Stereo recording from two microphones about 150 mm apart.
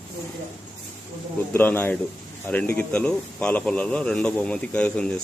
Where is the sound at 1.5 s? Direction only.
10° left (ahead or behind).